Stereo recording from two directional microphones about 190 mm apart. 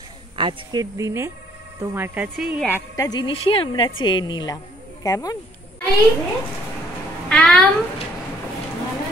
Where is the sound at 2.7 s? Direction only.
20° left (ahead or behind).